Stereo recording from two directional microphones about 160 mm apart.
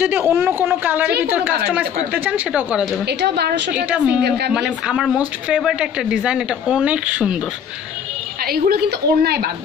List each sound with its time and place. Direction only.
0.0 s a woman's voice: 15° right (ahead or behind)
3.1 s a woman's voice: 90° right
3.7 s a woman's voice: 5° right (ahead or behind)
8.5 s a woman's voice: 75° right (ahead or behind)